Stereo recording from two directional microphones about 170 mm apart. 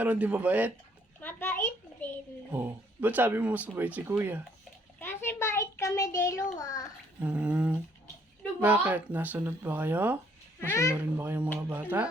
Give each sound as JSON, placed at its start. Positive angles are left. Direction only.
{"t": 0.0, "sound": "speech", "side_deg": -10}
{"t": 1.2, "sound": "a sound", "side_deg": 10}
{"t": 2.5, "sound": "speech", "side_deg": -10}
{"t": 4.9, "sound": "a sound", "side_deg": 15}
{"t": 6.6, "sound": "a child's voice", "side_deg": 20}
{"t": 7.2, "sound": "speech", "side_deg": -10}
{"t": 10.6, "sound": "speech", "side_deg": 15}
{"t": 10.9, "sound": "speech", "side_deg": -10}